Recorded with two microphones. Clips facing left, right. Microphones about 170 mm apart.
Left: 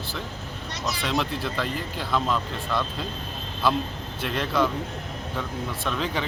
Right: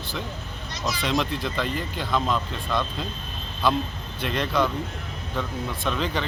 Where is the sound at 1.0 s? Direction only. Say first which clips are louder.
Right 1 dB; 5° left (ahead or behind).